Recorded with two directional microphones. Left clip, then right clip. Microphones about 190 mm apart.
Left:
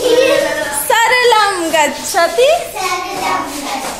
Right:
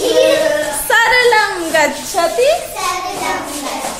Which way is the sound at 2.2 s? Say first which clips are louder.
Left 2 dB; 15° left (ahead or behind).